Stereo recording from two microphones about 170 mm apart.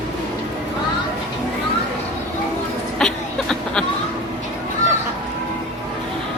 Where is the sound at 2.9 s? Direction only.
5° left (ahead or behind).